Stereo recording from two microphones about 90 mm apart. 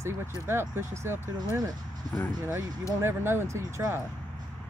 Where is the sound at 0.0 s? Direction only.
30° right (ahead or behind).